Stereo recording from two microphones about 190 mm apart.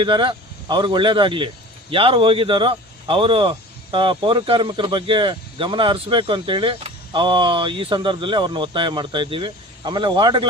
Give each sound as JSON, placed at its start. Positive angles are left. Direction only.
{"t": 0.0, "sound": "speech", "side_deg": -25}